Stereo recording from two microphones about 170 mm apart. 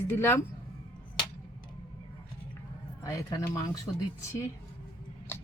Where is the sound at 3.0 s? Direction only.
20° left (ahead or behind).